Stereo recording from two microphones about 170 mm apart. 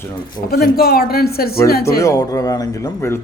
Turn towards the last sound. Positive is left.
turn(degrees=15)  # may be behind; listen again after turning